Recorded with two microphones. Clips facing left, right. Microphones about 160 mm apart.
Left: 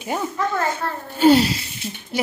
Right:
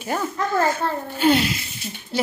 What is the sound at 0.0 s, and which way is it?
Speech, 15° left (ahead or behind).